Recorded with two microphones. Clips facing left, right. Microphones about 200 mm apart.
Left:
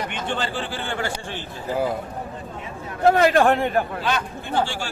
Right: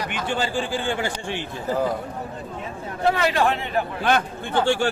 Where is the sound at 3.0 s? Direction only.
50° left (ahead or behind).